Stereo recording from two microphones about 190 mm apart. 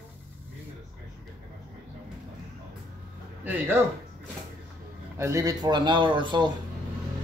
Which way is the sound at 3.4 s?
10° right (ahead or behind).